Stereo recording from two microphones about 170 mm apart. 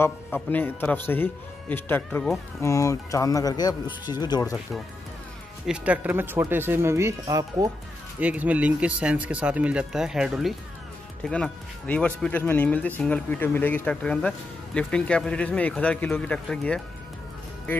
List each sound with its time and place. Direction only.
0.0 s speech: 10° left (ahead or behind)
5.7 s speech: 10° right (ahead or behind)
8.2 s speech: 10° right (ahead or behind)